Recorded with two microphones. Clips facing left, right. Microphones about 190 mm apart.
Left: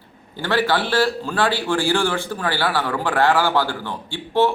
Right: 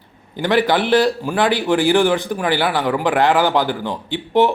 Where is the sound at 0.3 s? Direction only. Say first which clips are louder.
Right 4 dB; 15° right (ahead or behind).